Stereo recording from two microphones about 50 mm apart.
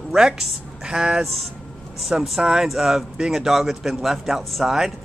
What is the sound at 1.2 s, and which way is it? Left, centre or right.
A man's voice, centre.